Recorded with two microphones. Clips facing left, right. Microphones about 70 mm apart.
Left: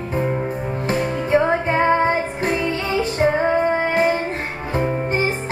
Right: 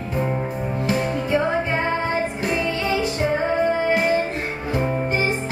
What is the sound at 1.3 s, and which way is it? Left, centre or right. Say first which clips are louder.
Music: left 5 dB; left.